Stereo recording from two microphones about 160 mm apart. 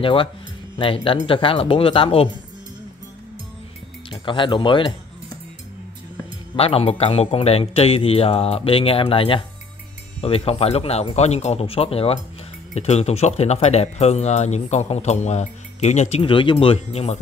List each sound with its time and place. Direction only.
0.0 s a man's voice: 35° left (ahead or behind)
4.1 s a man's voice: 30° left (ahead or behind)
6.5 s a man's voice: 40° left (ahead or behind)